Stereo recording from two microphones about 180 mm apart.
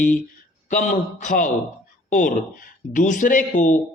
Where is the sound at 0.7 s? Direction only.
45° left (ahead or behind).